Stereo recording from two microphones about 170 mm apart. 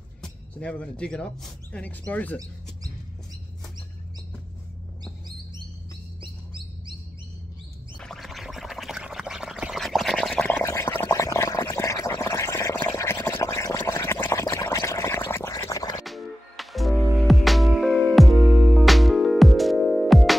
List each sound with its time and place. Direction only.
0.2 s speech: 5° left (ahead or behind)
8.0 s a sound: centre (ahead or behind); by 16.0 s 20° left (ahead or behind)
16.0 s music: centre (ahead or behind)